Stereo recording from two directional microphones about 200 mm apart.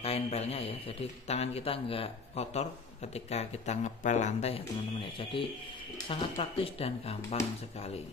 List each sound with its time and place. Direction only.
0.0 s a man's voice: 30° left (ahead or behind)
6.0 s speech: 25° left (ahead or behind)